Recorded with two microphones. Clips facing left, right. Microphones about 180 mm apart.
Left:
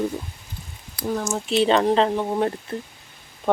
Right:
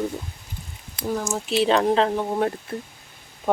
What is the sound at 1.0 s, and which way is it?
Speech, centre (ahead or behind).